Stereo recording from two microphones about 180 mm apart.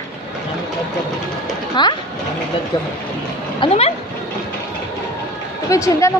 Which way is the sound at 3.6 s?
30° left (ahead or behind).